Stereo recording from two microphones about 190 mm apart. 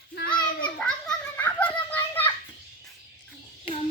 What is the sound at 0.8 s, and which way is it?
Children playing, 5° left (ahead or behind).